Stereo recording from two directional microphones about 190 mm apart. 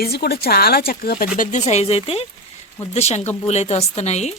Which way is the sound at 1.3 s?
40° left (ahead or behind).